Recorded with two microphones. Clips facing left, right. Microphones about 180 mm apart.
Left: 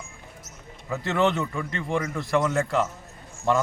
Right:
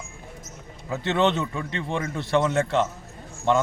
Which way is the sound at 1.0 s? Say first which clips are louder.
Right 1 dB; 25° right (ahead or behind).